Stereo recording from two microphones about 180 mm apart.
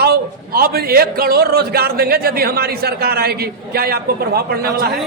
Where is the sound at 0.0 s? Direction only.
60° right (ahead or behind).